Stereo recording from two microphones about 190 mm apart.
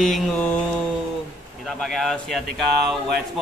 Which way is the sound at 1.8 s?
Centre (ahead or behind).